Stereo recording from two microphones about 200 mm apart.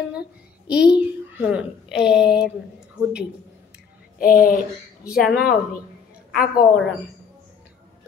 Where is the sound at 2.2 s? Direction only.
55° left (ahead or behind).